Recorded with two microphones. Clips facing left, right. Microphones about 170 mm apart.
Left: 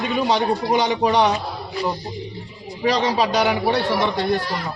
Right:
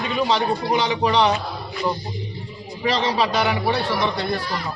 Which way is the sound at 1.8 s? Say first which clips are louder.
Even; 35° left (ahead or behind).